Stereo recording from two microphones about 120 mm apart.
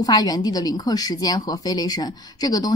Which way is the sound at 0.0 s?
35° left (ahead or behind).